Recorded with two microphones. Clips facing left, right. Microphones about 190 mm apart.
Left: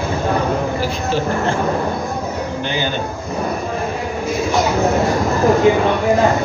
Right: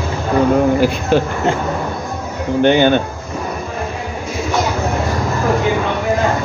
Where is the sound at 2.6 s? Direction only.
60° right (ahead or behind).